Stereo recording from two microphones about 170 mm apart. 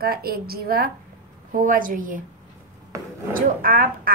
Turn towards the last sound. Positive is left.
turn(degrees=-55)  # may be behind; listen again after turning